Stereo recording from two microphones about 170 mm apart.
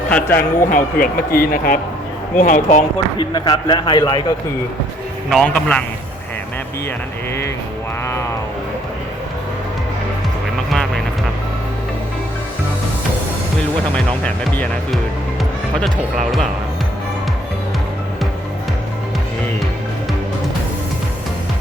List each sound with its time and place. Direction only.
0.1 s speech: 10° left (ahead or behind)
0.6 s speech: 50° left (ahead or behind)
3.2 s speech: 25° left (ahead or behind)
5.3 s a man's voice: 5° left (ahead or behind)
8.0 s music: 15° left (ahead or behind)
10.7 s vehicle: 5° left (ahead or behind)
14.3 s speech: 10° left (ahead or behind)